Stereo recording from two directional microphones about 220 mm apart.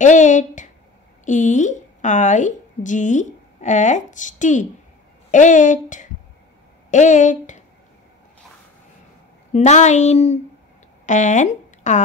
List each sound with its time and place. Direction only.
0.0 s a woman's voice: 35° left (ahead or behind)
9.5 s speech: 30° left (ahead or behind)